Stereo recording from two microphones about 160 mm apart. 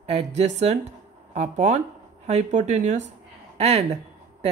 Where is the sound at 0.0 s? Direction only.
45° right (ahead or behind).